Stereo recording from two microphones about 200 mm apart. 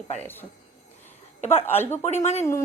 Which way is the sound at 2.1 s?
35° left (ahead or behind).